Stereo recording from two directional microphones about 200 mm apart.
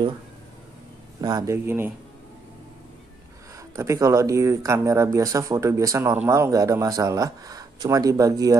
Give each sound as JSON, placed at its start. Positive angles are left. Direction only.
{"t": 1.2, "sound": "speech", "side_deg": -20}
{"t": 3.5, "sound": "speech", "side_deg": -15}